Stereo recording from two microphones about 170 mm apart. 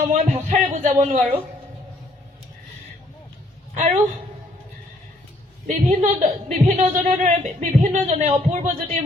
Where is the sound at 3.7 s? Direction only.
45° right (ahead or behind).